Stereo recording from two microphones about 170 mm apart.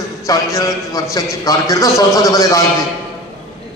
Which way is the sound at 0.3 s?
20° left (ahead or behind).